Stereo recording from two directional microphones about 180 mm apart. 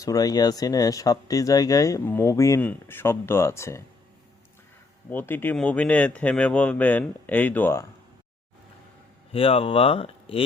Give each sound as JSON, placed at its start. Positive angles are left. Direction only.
{"t": 0.0, "sound": "speech", "side_deg": 20}
{"t": 5.1, "sound": "speech", "side_deg": 10}
{"t": 9.3, "sound": "speech", "side_deg": 30}